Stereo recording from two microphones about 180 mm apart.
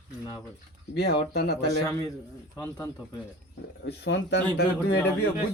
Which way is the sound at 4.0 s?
75° left (ahead or behind).